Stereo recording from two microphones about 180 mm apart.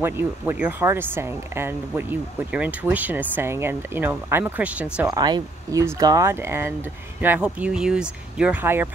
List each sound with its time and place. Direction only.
0.0 s speech: 10° right (ahead or behind)
5.0 s speech: 20° right (ahead or behind)